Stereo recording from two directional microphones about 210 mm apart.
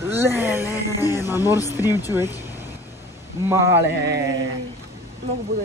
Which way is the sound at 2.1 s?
10° right (ahead or behind).